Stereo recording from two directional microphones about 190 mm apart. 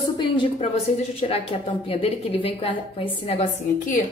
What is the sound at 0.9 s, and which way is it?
A woman's voice, 35° left (ahead or behind).